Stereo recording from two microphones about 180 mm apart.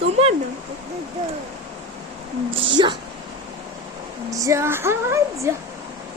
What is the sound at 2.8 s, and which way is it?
Speech, 25° right (ahead or behind).